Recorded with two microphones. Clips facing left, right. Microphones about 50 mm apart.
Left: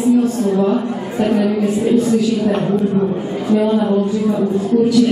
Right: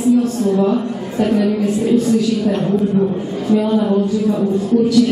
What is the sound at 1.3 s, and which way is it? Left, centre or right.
Speech, centre.